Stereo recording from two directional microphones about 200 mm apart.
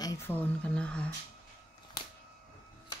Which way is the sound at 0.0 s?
15° left (ahead or behind).